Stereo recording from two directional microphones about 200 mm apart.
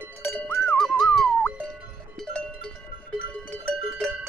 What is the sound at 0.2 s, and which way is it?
Cowbell, 5° left (ahead or behind).